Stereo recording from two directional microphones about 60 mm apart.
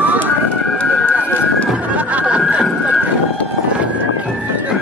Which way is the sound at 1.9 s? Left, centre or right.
Right.